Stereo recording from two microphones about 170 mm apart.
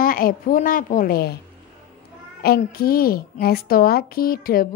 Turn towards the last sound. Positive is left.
turn(degrees=60)  # may be behind; listen again after turning